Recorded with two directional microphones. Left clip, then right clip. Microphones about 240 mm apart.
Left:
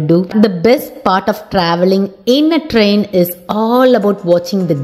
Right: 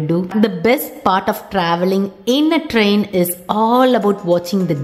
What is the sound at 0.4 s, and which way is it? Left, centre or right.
A woman's voice, centre.